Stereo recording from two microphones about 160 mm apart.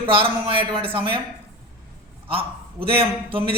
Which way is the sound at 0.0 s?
35° right (ahead or behind).